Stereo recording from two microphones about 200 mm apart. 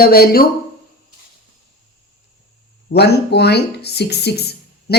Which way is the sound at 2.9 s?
55° left (ahead or behind).